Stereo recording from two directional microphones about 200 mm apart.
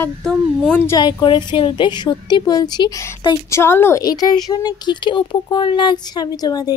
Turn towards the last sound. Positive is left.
turn(degrees=20)  # may be behind; listen again after turning